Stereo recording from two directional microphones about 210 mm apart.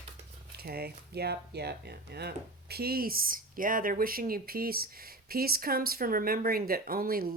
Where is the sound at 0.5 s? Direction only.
45° right (ahead or behind).